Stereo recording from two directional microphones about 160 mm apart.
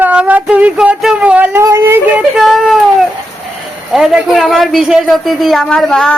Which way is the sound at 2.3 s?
Centre (ahead or behind).